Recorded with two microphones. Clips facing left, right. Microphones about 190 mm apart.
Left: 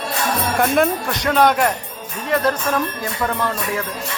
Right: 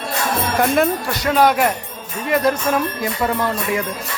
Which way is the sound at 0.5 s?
Centre (ahead or behind).